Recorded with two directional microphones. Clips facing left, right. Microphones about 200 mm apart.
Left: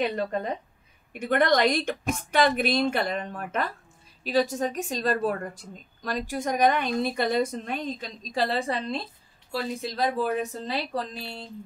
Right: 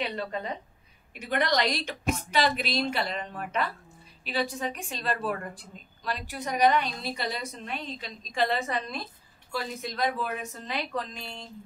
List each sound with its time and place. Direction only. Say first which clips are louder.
0.0 s a woman's voice: left 5 dB; 45° left (ahead or behind)